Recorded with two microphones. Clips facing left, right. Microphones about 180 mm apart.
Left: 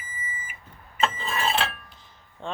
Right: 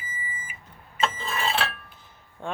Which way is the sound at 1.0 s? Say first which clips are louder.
Left 1 dB; centre (ahead or behind).